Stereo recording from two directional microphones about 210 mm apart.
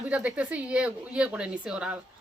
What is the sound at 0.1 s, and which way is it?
A woman's voice, 5° right (ahead or behind).